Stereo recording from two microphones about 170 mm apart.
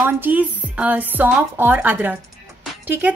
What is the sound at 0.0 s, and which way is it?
A woman's voice, 10° right (ahead or behind).